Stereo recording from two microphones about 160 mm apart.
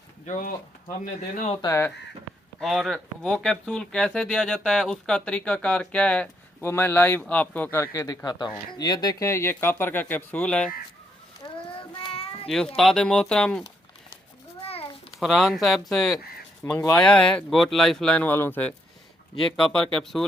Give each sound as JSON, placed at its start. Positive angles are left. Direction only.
{"t": 0.3, "sound": "speech", "side_deg": 55}
{"t": 1.6, "sound": "speech", "side_deg": 15}
{"t": 2.6, "sound": "speech", "side_deg": 0}
{"t": 11.3, "sound": "child singing", "side_deg": 30}
{"t": 12.5, "sound": "speech", "side_deg": 5}
{"t": 15.2, "sound": "speech", "side_deg": 0}